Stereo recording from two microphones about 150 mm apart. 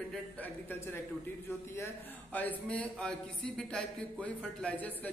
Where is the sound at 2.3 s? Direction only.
10° left (ahead or behind).